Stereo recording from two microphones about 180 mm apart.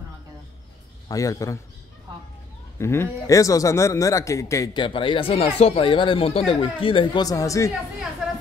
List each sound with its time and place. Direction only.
1.0 s a man's voice: 20° left (ahead or behind)
2.8 s a man's voice: 15° left (ahead or behind)